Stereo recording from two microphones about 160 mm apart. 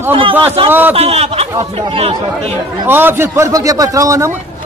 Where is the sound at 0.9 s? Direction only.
40° right (ahead or behind).